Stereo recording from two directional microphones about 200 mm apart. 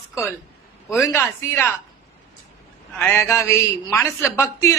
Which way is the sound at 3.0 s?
10° left (ahead or behind).